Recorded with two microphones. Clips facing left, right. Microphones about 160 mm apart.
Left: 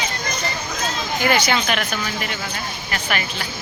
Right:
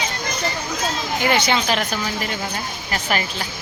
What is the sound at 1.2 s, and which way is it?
Speech, 25° right (ahead or behind).